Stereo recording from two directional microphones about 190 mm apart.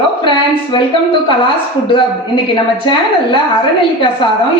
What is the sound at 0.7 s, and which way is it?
Speech, 25° left (ahead or behind).